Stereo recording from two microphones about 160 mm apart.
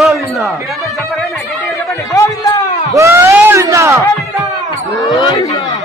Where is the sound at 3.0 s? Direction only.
20° right (ahead or behind).